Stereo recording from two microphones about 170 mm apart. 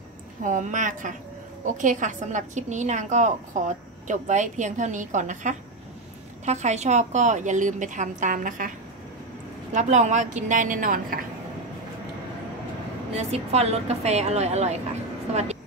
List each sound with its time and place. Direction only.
0.4 s a woman's voice: 50° right (ahead or behind)
13.1 s a woman's voice: 40° right (ahead or behind)